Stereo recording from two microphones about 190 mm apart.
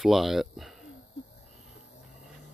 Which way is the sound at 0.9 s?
65° left (ahead or behind).